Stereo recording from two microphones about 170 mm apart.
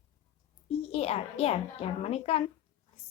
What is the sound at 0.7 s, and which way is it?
A woman's voice, 35° left (ahead or behind).